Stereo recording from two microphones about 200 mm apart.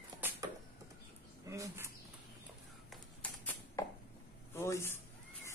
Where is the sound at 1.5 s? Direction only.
15° right (ahead or behind).